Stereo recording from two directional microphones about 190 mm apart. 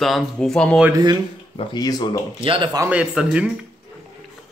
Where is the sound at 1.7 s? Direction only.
20° left (ahead or behind).